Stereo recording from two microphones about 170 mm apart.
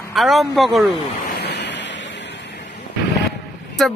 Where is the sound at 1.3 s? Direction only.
85° left.